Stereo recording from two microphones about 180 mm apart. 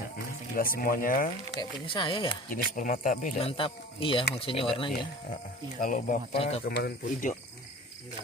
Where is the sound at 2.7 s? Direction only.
45° left (ahead or behind).